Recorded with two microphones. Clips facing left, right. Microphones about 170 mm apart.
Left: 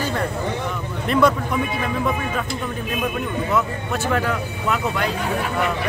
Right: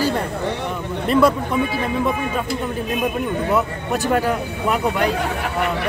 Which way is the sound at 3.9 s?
40° right (ahead or behind).